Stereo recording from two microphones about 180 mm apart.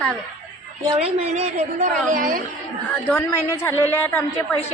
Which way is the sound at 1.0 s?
35° right (ahead or behind).